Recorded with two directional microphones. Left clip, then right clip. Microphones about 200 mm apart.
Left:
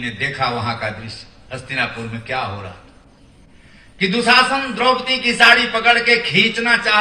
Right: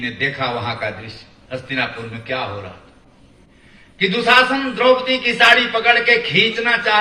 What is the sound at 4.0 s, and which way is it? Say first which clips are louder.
A man's voice: even; 15° right (ahead or behind).